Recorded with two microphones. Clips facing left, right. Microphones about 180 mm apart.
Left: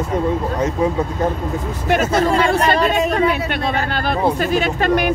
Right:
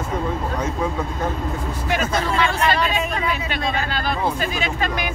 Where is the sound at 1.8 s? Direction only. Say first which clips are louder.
Left 6 dB; 55° left (ahead or behind).